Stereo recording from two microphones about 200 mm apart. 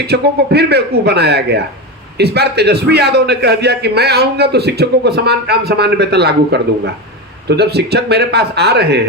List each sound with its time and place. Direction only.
0.1 s a man's voice: 55° right (ahead or behind)